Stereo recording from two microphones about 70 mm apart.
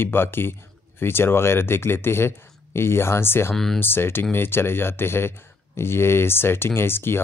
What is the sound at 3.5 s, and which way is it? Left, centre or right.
Speech, centre.